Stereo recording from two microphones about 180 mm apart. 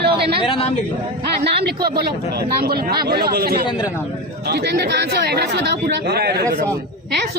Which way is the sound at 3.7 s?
20° left (ahead or behind).